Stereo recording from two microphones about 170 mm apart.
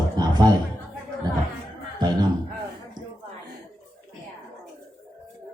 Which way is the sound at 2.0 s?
25° right (ahead or behind).